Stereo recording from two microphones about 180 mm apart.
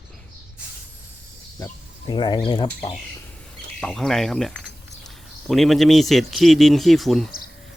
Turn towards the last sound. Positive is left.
turn(degrees=0)  # may be behind; listen again after turning